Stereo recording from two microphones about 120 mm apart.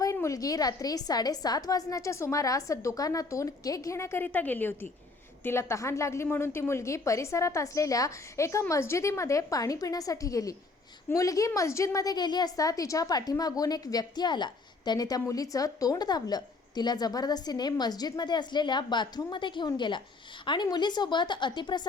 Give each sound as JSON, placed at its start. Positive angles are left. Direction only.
{"t": 0.0, "sound": "a woman's voice", "side_deg": 25}